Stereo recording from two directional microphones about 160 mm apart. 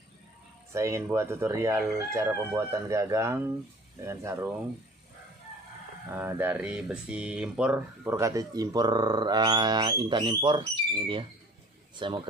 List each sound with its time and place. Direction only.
0.7 s speech: 20° right (ahead or behind)
1.1 s chicken: 15° right (ahead or behind)
6.0 s speech: 15° right (ahead or behind); by 12.3 s 30° right (ahead or behind)